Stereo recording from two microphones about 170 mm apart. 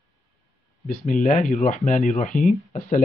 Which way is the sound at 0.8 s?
50° left (ahead or behind).